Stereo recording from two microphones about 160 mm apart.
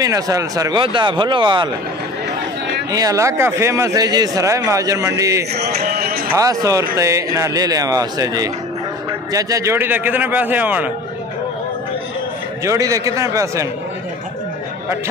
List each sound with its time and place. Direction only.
0.0 s speech: 20° right (ahead or behind)
2.9 s speech: 20° right (ahead or behind)
5.5 s music: 85° right
6.3 s speech: 20° right (ahead or behind)
12.6 s speech: 20° right (ahead or behind)